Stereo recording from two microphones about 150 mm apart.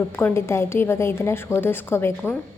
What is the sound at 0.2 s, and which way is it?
A woman's voice, 15° left (ahead or behind).